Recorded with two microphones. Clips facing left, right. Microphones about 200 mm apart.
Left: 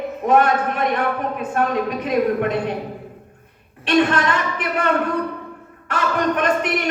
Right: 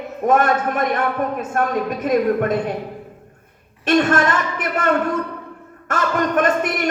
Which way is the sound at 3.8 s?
45° right (ahead or behind).